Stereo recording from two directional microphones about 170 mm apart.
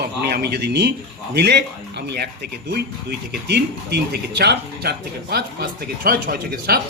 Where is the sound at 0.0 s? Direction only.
70° right (ahead or behind).